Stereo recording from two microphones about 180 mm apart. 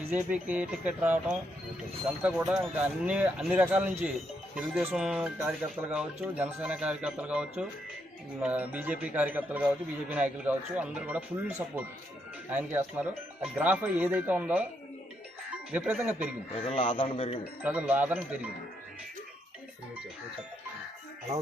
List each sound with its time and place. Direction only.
0.0 s speech: 10° right (ahead or behind)
15.7 s speech: 10° right (ahead or behind)
16.6 s a man's voice: 30° left (ahead or behind)
17.6 s speech: 10° right (ahead or behind)